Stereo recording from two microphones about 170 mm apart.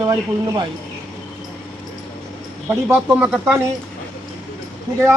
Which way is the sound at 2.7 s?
10° right (ahead or behind).